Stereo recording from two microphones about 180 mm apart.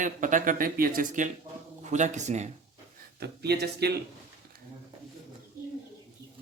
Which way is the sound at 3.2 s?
65° right (ahead or behind).